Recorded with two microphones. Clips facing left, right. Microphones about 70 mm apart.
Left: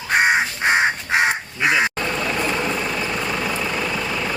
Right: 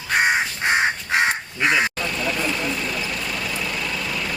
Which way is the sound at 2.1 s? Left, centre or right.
Left.